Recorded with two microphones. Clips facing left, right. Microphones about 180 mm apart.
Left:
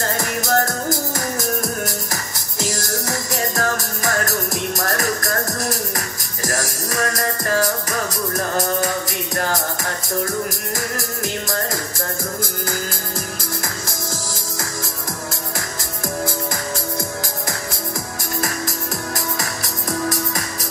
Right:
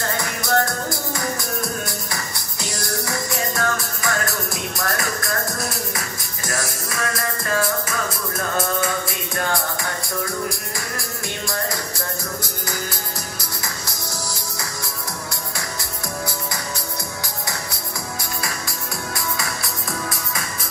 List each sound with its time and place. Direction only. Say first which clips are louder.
0.4 s music: left 1 dB; 45° left (ahead or behind)
10.2 s music: left 2 dB; 45° left (ahead or behind)
18.4 s music: left 5 dB; 45° left (ahead or behind)